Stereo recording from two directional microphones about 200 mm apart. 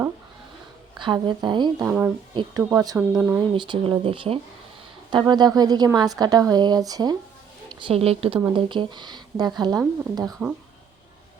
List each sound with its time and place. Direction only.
0.9 s speech: 25° right (ahead or behind)
1.9 s speech: 10° right (ahead or behind)
2.3 s speech: 25° right (ahead or behind)
3.5 s speech: 25° right (ahead or behind)
10.4 s speech: 5° right (ahead or behind)